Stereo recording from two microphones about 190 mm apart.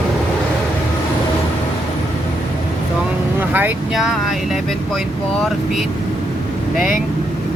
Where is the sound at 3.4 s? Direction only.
10° right (ahead or behind).